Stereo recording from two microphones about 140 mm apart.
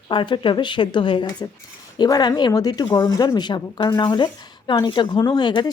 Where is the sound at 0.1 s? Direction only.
35° left (ahead or behind).